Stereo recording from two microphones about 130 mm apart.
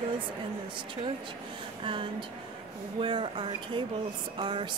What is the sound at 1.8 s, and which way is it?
Speech, 40° right (ahead or behind).